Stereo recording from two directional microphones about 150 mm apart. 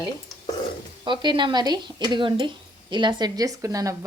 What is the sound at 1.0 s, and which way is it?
A woman's voice, 30° right (ahead or behind).